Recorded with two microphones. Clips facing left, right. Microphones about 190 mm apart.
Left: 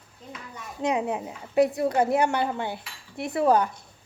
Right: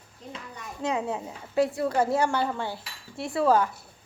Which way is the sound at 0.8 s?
15° left (ahead or behind).